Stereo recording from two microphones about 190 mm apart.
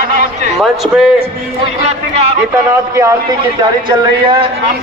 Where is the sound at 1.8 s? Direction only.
35° right (ahead or behind).